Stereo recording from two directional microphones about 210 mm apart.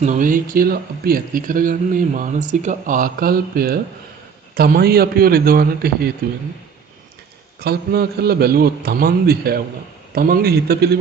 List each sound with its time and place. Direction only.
0.0 s a man's voice: 40° right (ahead or behind)
7.6 s a man's voice: 50° right (ahead or behind)